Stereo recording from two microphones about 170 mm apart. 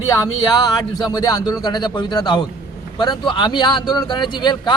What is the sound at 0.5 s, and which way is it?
A man's voice, 25° left (ahead or behind).